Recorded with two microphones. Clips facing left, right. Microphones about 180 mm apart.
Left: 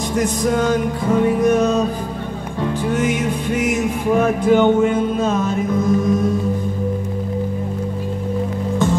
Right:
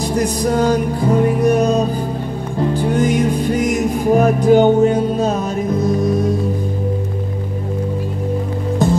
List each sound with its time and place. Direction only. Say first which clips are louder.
0.1 s music: even; 35° right (ahead or behind)